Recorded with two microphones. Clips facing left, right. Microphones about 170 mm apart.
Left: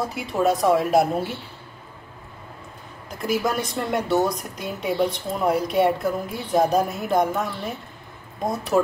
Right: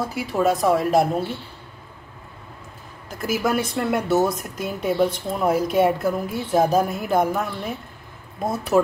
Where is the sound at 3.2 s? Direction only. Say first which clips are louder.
Right 1 dB; 5° right (ahead or behind).